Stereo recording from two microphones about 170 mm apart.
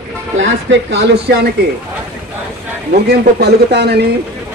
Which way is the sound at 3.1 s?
70° right (ahead or behind).